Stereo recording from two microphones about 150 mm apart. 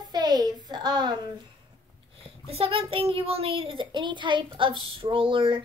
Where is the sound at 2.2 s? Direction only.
40° right (ahead or behind).